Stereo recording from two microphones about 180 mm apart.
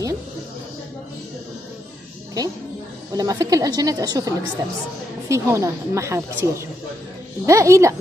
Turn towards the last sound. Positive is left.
turn(degrees=-15)  # may be behind; listen again after turning